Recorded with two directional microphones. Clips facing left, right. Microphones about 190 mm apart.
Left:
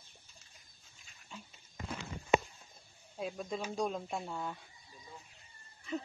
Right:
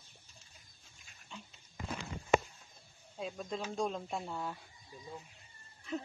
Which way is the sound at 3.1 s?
5° left (ahead or behind).